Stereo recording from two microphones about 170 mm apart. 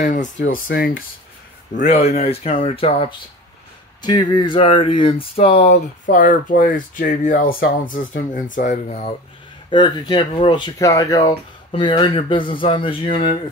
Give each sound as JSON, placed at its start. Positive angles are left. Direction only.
{"t": 0.0, "sound": "speech", "side_deg": 45}
{"t": 0.4, "sound": "speech", "side_deg": 60}
{"t": 1.8, "sound": "speech", "side_deg": 40}
{"t": 9.7, "sound": "speech", "side_deg": 25}